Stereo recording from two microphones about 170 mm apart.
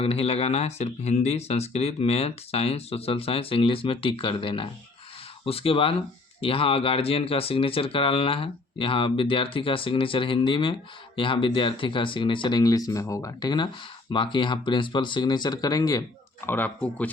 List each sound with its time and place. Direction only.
0.0 s speech: 35° left (ahead or behind)
16.5 s speech: 10° left (ahead or behind)